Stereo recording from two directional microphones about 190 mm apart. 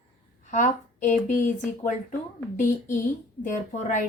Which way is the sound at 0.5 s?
40° left (ahead or behind).